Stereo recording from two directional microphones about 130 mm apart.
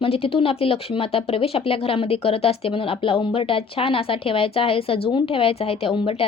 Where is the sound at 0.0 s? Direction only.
45° left (ahead or behind).